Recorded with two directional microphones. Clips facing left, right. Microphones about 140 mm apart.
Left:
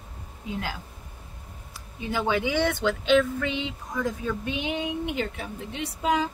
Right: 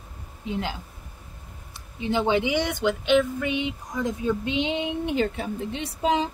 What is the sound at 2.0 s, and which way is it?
Speech, 20° right (ahead or behind).